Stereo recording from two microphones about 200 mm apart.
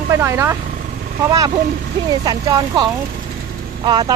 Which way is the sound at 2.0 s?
20° right (ahead or behind).